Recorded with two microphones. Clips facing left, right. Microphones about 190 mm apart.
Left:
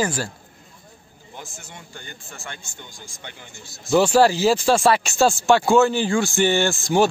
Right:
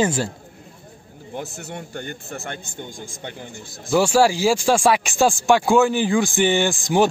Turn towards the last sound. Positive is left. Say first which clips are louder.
# even
turn(degrees=-15)  # may be behind; listen again after turning